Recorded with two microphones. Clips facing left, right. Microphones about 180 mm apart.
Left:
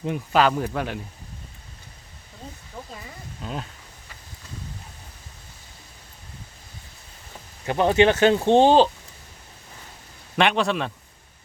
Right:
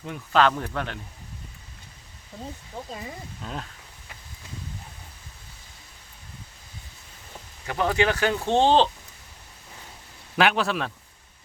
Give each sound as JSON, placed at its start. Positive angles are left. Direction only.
{"t": 0.3, "sound": "speech", "side_deg": 10}
{"t": 3.4, "sound": "a man's voice", "side_deg": 5}
{"t": 7.7, "sound": "speech", "side_deg": 25}
{"t": 10.3, "sound": "a man's voice", "side_deg": -5}